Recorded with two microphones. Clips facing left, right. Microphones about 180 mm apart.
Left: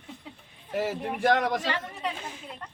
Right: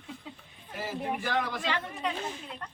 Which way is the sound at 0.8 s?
75° left (ahead or behind).